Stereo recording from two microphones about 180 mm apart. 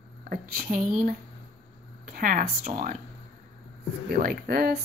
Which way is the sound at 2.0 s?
50° right (ahead or behind).